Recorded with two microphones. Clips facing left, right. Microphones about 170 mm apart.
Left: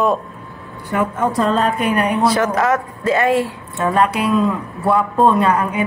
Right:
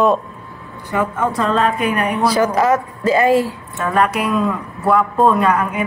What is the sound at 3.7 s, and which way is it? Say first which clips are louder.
Speech: left 1 dB; 30° left (ahead or behind).